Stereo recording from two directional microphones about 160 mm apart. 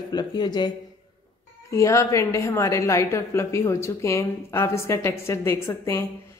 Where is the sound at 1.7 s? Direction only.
20° left (ahead or behind).